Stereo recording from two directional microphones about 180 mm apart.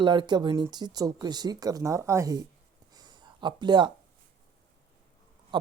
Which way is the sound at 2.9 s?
20° right (ahead or behind).